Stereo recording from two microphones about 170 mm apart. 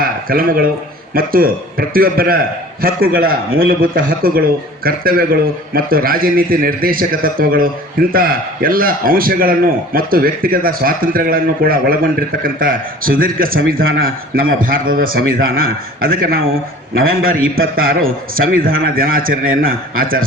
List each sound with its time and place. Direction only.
0.3 s a man's voice: 60° right (ahead or behind)